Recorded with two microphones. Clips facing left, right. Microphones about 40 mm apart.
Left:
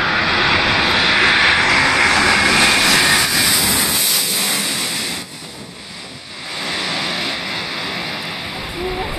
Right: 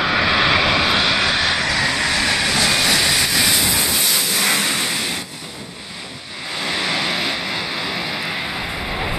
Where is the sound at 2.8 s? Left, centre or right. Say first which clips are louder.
Left 3 dB; left.